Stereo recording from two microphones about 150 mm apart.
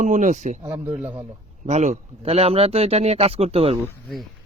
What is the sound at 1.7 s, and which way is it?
Speech, 50° right (ahead or behind).